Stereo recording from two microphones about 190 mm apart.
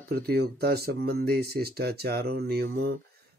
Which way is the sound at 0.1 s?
55° right (ahead or behind).